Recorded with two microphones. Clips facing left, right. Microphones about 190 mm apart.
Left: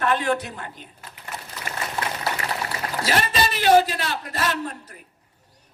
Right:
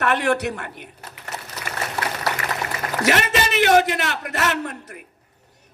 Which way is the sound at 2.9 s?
75° right (ahead or behind).